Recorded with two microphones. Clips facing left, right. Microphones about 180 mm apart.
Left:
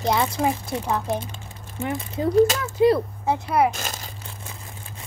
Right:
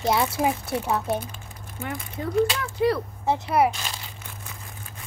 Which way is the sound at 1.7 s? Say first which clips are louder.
Left 6 dB; 25° left (ahead or behind).